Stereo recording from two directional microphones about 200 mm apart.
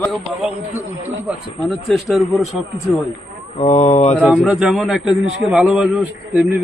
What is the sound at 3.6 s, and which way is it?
Speech, 35° left (ahead or behind).